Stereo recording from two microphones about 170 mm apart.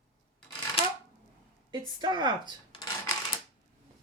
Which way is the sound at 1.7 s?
25° right (ahead or behind).